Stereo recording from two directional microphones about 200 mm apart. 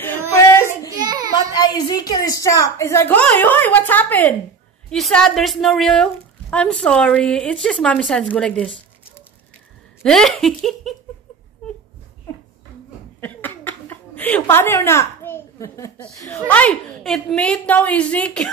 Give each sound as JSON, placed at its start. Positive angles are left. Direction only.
{"t": 0.3, "sound": "child singing", "side_deg": 15}
{"t": 0.7, "sound": "a sound", "side_deg": -20}
{"t": 1.3, "sound": "a woman's voice", "side_deg": 20}
{"t": 10.0, "sound": "a woman's voice", "side_deg": 0}
{"t": 13.2, "sound": "a sound", "side_deg": 10}
{"t": 16.3, "sound": "a woman's voice", "side_deg": 5}